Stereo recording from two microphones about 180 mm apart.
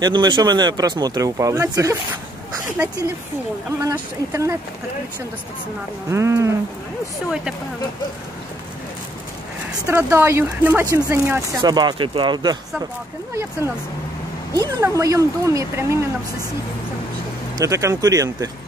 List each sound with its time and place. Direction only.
0.0 s speech: 25° right (ahead or behind)
3.8 s speech: 15° right (ahead or behind)
6.1 s speech: 15° right (ahead or behind)
9.8 s speech: 15° right (ahead or behind)
14.6 s speech: 15° right (ahead or behind)
17.6 s speech: 15° right (ahead or behind)